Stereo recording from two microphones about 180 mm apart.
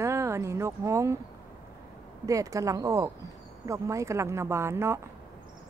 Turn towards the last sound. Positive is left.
turn(degrees=-15)  # may be behind; listen again after turning